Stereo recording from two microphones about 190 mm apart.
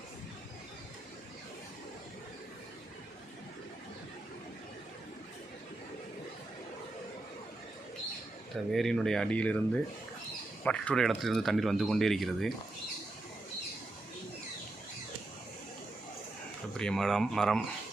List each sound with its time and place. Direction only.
8.7 s speech: centre (ahead or behind)
16.7 s speech: 5° left (ahead or behind)